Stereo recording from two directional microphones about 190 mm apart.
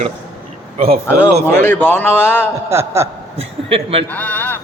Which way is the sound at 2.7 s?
15° right (ahead or behind).